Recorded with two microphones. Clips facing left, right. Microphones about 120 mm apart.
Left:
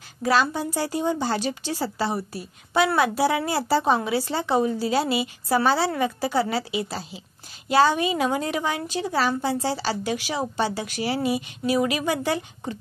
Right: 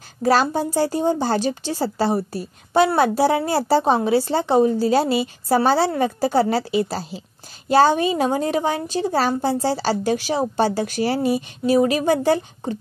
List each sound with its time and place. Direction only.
0.2 s a woman's voice: 35° right (ahead or behind)